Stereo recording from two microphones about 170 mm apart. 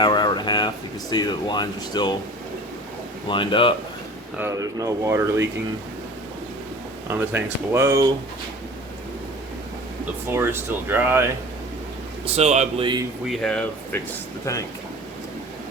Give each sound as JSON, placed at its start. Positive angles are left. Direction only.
{"t": 0.0, "sound": "a sound", "side_deg": 25}
{"t": 1.1, "sound": "speech", "side_deg": 25}
{"t": 3.2, "sound": "speech", "side_deg": 30}
{"t": 4.4, "sound": "speech", "side_deg": -15}
{"t": 7.1, "sound": "speech", "side_deg": -10}
{"t": 10.2, "sound": "speech", "side_deg": -15}
{"t": 12.2, "sound": "speech", "side_deg": -40}
{"t": 12.8, "sound": "speech", "side_deg": -25}
{"t": 13.2, "sound": "speech", "side_deg": 0}